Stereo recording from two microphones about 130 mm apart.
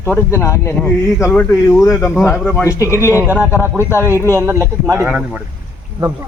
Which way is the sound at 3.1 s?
15° right (ahead or behind).